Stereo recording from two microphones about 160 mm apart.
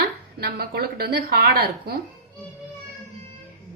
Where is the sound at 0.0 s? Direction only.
85° right.